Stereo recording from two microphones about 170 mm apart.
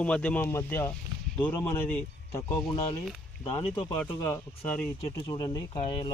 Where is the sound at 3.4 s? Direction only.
25° left (ahead or behind).